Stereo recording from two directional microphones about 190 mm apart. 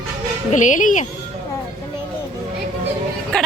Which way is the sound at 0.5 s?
40° left (ahead or behind).